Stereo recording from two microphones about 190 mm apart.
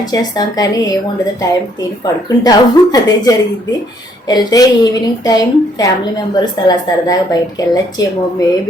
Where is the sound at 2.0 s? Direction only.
20° left (ahead or behind).